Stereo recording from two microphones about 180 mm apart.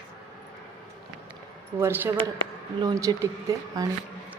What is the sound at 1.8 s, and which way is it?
A woman's voice, 15° right (ahead or behind).